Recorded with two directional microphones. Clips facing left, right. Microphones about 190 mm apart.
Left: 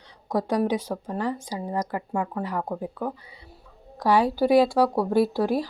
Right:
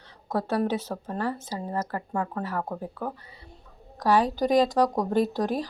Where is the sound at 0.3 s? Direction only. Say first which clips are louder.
Left 2 dB; 15° left (ahead or behind).